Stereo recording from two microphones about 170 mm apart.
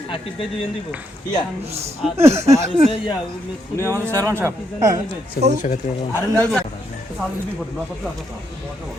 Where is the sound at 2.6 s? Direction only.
40° right (ahead or behind).